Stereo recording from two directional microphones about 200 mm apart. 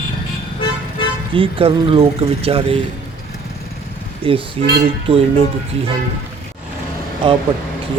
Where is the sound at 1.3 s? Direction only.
25° right (ahead or behind).